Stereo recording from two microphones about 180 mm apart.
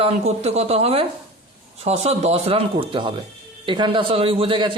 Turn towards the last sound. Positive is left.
turn(degrees=-30)  # may be behind; listen again after turning